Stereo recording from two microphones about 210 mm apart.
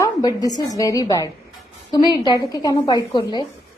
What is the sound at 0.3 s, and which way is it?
A woman's voice, 20° left (ahead or behind).